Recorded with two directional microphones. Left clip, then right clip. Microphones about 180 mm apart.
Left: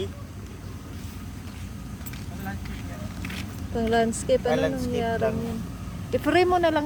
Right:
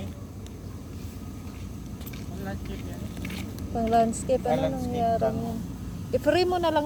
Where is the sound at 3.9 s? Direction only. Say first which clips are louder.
Even; 20° left (ahead or behind).